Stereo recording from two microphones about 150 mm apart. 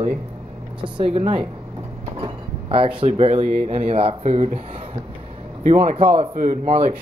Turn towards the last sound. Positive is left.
turn(degrees=-50)  # may be behind; listen again after turning